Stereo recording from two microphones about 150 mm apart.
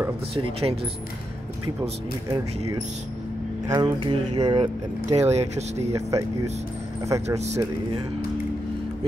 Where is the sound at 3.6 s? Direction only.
25° right (ahead or behind).